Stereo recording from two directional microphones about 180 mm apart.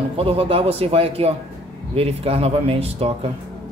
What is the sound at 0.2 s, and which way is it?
Speech, 30° right (ahead or behind).